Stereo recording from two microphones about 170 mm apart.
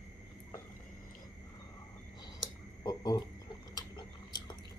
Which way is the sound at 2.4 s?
25° left (ahead or behind).